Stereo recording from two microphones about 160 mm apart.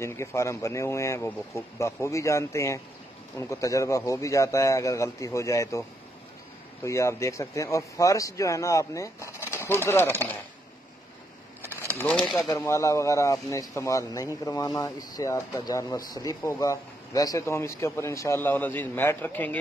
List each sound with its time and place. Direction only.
0.0 s a man's voice: 15° left (ahead or behind)
12.0 s speech: 10° left (ahead or behind)
12.4 s a man's voice: 20° left (ahead or behind)